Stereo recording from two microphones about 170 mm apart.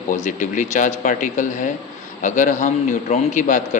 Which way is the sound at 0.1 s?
50° left (ahead or behind).